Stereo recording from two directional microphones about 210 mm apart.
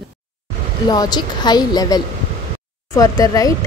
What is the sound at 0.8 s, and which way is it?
Speech, 20° left (ahead or behind).